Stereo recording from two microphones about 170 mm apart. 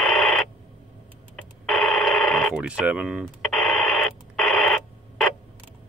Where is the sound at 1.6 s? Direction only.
Centre (ahead or behind).